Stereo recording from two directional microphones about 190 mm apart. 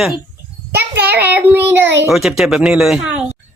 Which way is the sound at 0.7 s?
55° right (ahead or behind).